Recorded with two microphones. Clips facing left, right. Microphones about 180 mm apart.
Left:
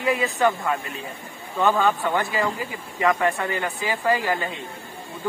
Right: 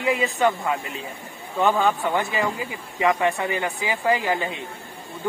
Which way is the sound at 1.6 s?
15° right (ahead or behind).